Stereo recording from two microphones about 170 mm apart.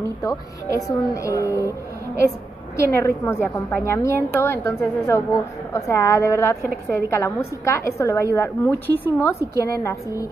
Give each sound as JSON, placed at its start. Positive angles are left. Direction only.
{"t": 0.2, "sound": "a woman's voice", "side_deg": 20}
{"t": 2.8, "sound": "a woman's voice", "side_deg": 15}